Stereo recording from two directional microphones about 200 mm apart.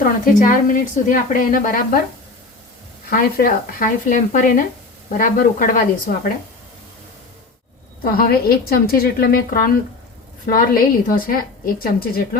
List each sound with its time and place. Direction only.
0.0 s a woman's voice: 40° left (ahead or behind)
3.1 s a woman's voice: 50° left (ahead or behind)
8.0 s a woman's voice: 50° left (ahead or behind)